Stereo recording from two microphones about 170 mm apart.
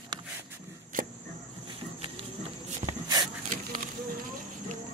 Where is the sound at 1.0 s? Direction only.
55° right (ahead or behind).